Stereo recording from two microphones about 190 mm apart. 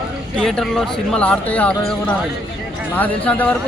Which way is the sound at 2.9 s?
10° left (ahead or behind).